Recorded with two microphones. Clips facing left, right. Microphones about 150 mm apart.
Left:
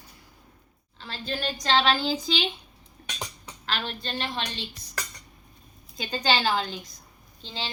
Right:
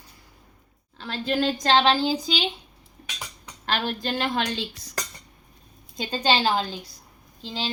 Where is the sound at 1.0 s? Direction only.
90° right.